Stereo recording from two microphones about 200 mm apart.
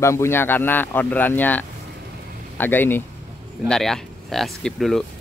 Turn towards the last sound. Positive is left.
turn(degrees=0)  # may be behind; listen again after turning